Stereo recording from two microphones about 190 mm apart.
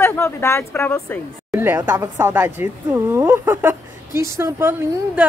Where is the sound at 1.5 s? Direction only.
10° right (ahead or behind).